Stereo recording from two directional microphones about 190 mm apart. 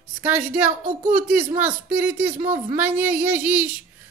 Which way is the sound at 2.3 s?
40° right (ahead or behind).